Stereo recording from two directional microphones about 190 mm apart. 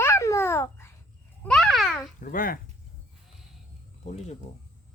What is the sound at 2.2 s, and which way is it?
Speech, 50° left (ahead or behind).